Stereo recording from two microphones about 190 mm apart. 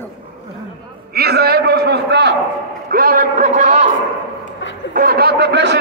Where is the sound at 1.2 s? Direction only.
55° right (ahead or behind).